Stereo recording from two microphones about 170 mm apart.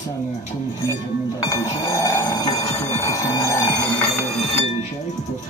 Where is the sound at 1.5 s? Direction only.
20° left (ahead or behind).